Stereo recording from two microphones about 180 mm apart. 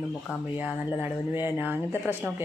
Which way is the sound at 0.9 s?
10° right (ahead or behind).